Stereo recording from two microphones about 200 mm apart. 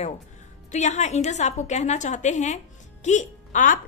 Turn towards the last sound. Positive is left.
turn(degrees=40)  # may be behind; listen again after turning